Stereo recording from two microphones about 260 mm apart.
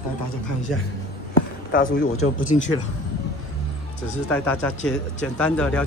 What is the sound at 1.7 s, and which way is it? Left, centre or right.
Speech, left.